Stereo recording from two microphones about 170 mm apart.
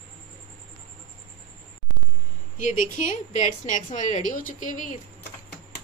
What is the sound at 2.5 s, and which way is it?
A woman's voice, 50° left (ahead or behind).